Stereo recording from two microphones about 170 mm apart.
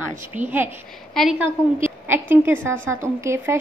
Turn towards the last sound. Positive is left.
turn(degrees=-15)  # may be behind; listen again after turning